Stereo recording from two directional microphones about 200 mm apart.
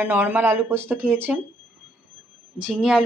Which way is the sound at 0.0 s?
10° right (ahead or behind).